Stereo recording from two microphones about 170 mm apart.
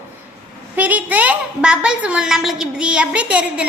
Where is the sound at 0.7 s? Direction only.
10° right (ahead or behind).